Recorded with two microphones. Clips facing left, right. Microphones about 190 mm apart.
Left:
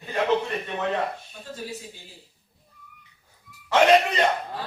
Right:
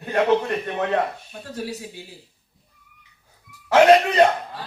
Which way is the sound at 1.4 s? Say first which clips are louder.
Right 6 dB; 70° right (ahead or behind).